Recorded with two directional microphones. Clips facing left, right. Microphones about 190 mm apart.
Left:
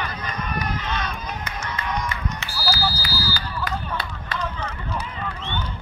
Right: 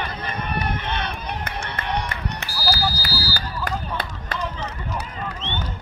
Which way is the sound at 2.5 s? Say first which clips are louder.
Right 1 dB; 40° right (ahead or behind).